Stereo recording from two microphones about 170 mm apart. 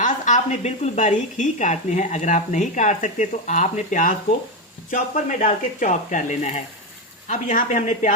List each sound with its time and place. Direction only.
0.0 s speech: 45° left (ahead or behind)